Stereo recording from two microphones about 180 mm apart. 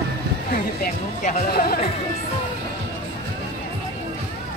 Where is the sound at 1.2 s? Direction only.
55° left (ahead or behind).